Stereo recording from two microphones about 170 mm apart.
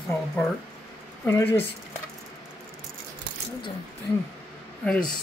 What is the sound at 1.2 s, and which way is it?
Speech, 10° left (ahead or behind).